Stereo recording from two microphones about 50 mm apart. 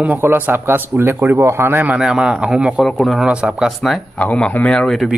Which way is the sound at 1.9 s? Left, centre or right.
Centre.